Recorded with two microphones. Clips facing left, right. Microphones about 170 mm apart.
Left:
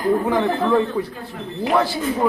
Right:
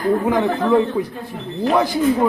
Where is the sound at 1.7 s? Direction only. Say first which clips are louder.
Right 3 dB; 15° right (ahead or behind).